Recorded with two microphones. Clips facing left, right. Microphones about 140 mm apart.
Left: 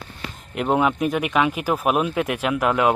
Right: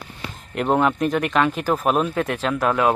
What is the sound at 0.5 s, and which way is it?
Speech, 5° left (ahead or behind).